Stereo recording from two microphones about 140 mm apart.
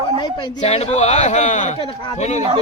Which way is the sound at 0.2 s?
30° left (ahead or behind).